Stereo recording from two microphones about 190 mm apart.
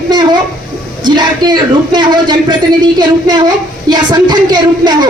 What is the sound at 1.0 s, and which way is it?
A woman's voice, 20° right (ahead or behind).